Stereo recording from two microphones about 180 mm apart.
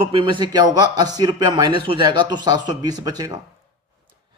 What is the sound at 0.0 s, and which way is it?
A man's voice, 30° right (ahead or behind).